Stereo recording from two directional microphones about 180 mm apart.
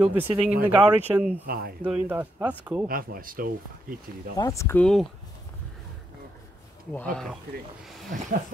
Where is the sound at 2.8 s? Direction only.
55° right (ahead or behind).